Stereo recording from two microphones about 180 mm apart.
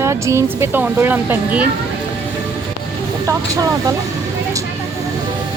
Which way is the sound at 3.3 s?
20° right (ahead or behind).